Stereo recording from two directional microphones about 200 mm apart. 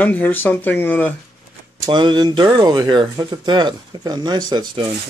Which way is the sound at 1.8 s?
25° right (ahead or behind).